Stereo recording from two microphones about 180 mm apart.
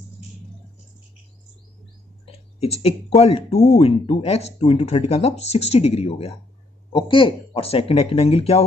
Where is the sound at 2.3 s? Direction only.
35° left (ahead or behind).